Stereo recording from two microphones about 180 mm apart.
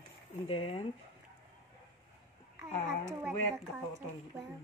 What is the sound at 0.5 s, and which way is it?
Speech, 30° left (ahead or behind).